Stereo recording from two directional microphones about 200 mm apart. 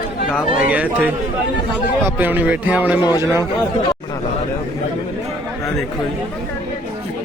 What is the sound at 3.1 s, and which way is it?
Speech, 20° left (ahead or behind).